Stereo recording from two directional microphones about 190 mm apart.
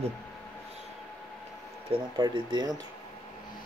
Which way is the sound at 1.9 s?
25° right (ahead or behind).